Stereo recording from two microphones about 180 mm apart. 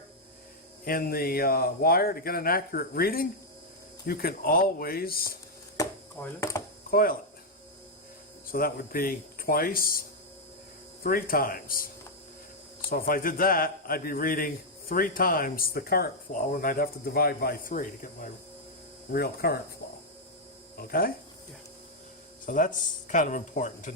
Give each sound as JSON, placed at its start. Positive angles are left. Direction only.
{"t": 0.9, "sound": "speech", "side_deg": 55}
{"t": 5.7, "sound": "chop", "side_deg": 20}
{"t": 6.2, "sound": "speech", "side_deg": 15}
{"t": 6.9, "sound": "speech", "side_deg": 55}
{"t": 8.4, "sound": "a man's voice", "side_deg": 55}
{"t": 12.9, "sound": "a man's voice", "side_deg": 55}
{"t": 19.8, "sound": "hum", "side_deg": 70}
{"t": 20.7, "sound": "speech", "side_deg": 55}
{"t": 22.4, "sound": "a man's voice", "side_deg": 45}